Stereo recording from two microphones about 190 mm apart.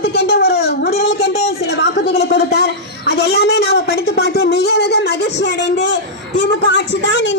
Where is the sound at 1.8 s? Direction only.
60° left (ahead or behind).